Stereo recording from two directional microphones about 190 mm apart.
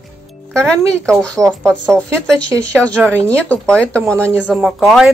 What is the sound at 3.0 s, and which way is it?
Speech, 10° right (ahead or behind).